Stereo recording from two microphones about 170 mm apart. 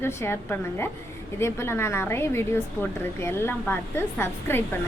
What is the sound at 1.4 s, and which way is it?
Speech, 15° left (ahead or behind).